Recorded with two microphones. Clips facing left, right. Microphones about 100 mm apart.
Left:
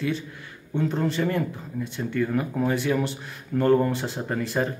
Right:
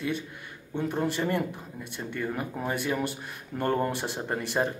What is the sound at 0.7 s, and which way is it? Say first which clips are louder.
Speech: left 3 dB; 15° right (ahead or behind).